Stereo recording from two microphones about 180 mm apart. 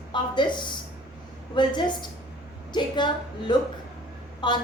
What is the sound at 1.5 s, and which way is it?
A woman's voice, 25° left (ahead or behind).